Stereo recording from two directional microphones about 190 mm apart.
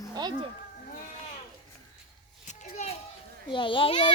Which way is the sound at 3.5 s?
25° left (ahead or behind).